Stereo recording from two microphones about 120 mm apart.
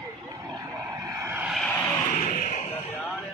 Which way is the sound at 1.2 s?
15° right (ahead or behind).